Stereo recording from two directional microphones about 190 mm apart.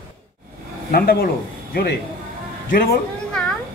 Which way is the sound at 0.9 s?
55° left (ahead or behind).